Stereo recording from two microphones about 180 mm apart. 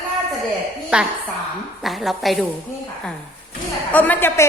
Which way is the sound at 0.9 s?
5° right (ahead or behind).